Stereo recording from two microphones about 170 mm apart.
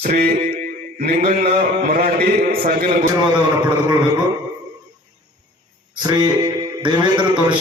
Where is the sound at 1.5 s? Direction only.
55° right (ahead or behind).